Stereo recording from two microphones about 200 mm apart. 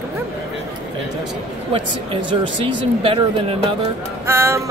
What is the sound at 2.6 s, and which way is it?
Speech, 25° right (ahead or behind).